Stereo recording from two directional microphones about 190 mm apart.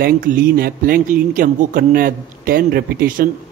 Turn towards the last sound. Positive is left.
turn(degrees=-50)  # may be behind; listen again after turning